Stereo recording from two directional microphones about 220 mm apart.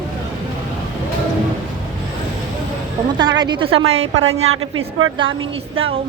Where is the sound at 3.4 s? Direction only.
20° right (ahead or behind).